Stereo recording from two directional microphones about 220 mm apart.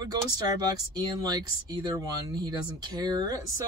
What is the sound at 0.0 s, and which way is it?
Speech, 15° right (ahead or behind).